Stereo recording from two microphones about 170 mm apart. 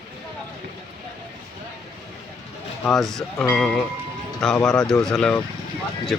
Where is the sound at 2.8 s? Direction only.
Centre (ahead or behind).